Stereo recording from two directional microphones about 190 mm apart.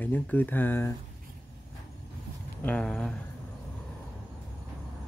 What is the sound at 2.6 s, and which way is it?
Speech, 5° left (ahead or behind).